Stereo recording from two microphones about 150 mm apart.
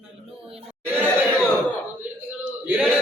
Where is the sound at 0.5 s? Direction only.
15° right (ahead or behind).